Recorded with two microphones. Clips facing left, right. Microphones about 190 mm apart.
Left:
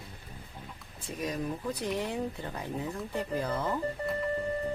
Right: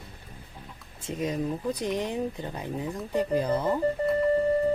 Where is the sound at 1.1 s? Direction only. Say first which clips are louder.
Right 5 dB; 20° right (ahead or behind).